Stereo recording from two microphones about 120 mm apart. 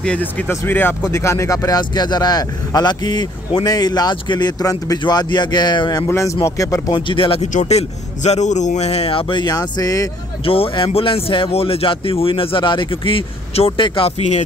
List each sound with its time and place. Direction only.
0.0 s speech: 10° left (ahead or behind); by 6.0 s 35° left (ahead or behind)
6.0 s speech: 25° left (ahead or behind)
7.1 s speech: 50° left (ahead or behind)
7.5 s a man's voice: 70° left (ahead or behind); by 10.0 s 30° left (ahead or behind)
10.4 s speech: 50° left (ahead or behind)